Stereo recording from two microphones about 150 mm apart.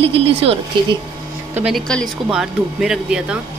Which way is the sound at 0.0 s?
40° right (ahead or behind).